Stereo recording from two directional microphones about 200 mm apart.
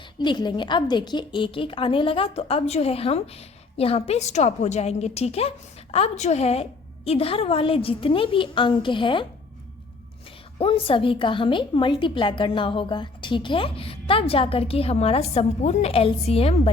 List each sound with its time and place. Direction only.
0.2 s a woman's voice: 20° left (ahead or behind)
10.6 s a woman's voice: 25° left (ahead or behind)